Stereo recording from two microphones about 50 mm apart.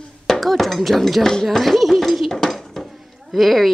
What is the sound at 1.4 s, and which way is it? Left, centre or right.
Dishes, centre.